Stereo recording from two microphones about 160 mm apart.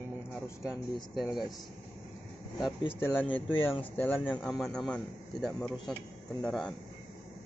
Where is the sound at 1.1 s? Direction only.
Centre (ahead or behind).